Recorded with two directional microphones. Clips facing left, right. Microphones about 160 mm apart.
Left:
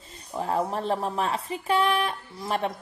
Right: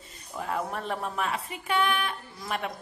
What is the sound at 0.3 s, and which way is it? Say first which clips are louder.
A woman's voice: left 5 dB; 30° left (ahead or behind).